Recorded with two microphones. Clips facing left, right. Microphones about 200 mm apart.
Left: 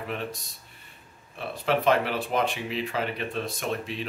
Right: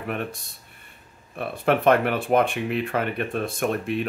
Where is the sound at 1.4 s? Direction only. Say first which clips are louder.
Right 4 dB; 55° right (ahead or behind).